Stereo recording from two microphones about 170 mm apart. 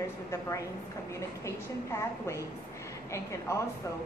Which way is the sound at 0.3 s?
20° left (ahead or behind).